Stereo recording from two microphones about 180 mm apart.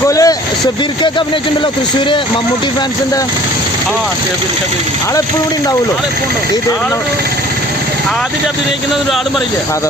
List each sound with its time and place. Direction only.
0.1 s speech: 20° left (ahead or behind)